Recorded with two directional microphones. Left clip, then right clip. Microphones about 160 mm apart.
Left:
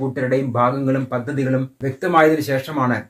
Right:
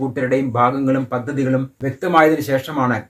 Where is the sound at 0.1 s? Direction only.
25° right (ahead or behind).